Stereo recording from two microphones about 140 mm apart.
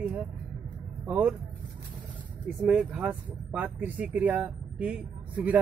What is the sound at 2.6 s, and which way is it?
Speech, 10° right (ahead or behind).